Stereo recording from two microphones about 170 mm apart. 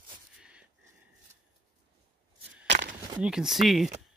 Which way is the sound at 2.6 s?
90° right.